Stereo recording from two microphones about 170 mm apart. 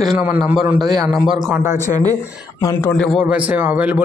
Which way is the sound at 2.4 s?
20° left (ahead or behind).